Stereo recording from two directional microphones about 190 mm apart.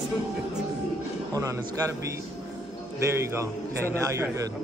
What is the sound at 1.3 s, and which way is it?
Speech, 15° right (ahead or behind).